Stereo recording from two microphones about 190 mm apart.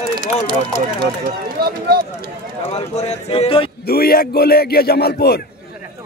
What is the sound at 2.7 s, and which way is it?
Speech, 35° left (ahead or behind).